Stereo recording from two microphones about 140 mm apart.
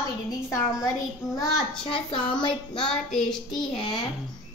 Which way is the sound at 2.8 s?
5° left (ahead or behind).